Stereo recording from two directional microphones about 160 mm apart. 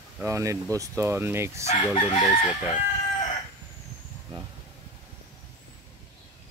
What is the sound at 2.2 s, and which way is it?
Chicken, 40° left (ahead or behind).